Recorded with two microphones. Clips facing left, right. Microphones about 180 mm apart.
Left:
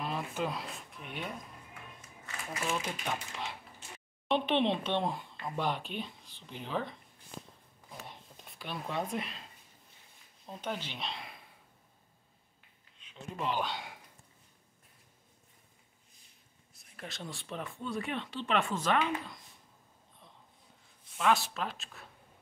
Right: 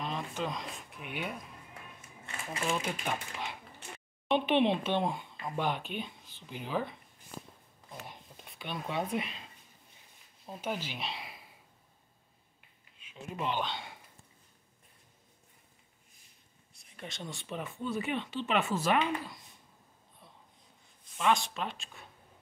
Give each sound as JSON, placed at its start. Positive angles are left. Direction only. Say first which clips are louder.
{"t": 0.0, "sound": "a sound", "louder": "left 1 dB", "side_deg": 5}
{"t": 0.9, "sound": "speech", "louder": "right 3 dB", "side_deg": -5}
{"t": 1.7, "sound": "music", "louder": "even", "side_deg": -30}
{"t": 3.1, "sound": "speech", "louder": "right 1 dB", "side_deg": 0}
{"t": 7.9, "sound": "a sound", "louder": "right 1 dB", "side_deg": -5}
{"t": 10.4, "sound": "speech", "louder": "right 2 dB", "side_deg": -5}
{"t": 13.0, "sound": "a sound", "louder": "right 1 dB", "side_deg": -10}
{"t": 13.5, "sound": "speech", "louder": "left 1 dB", "side_deg": 10}
{"t": 16.7, "sound": "speech", "louder": "right 1 dB", "side_deg": 0}
{"t": 21.2, "sound": "speech", "louder": "even", "side_deg": 5}